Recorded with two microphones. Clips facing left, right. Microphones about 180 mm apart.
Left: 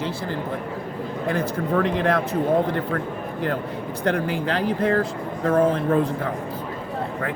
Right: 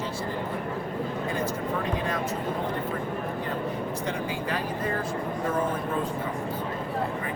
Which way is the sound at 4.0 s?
70° left (ahead or behind).